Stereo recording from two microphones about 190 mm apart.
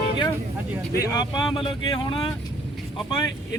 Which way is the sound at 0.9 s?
20° left (ahead or behind).